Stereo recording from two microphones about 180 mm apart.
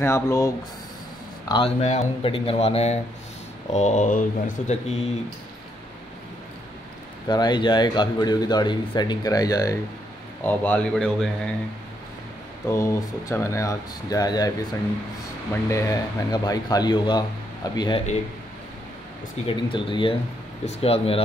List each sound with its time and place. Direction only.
0.0 s speech: 15° left (ahead or behind)
1.5 s speech: 35° left (ahead or behind)
7.2 s a man's voice: 25° left (ahead or behind); by 11.5 s 5° left (ahead or behind)
12.6 s speech: 15° left (ahead or behind)
15.7 s speech: 20° left (ahead or behind)
19.4 s speech: 30° left (ahead or behind)